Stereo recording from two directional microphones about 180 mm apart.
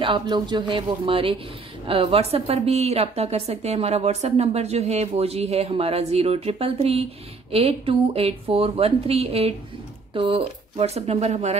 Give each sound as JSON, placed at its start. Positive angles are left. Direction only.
{"t": 0.0, "sound": "a man's voice", "side_deg": -25}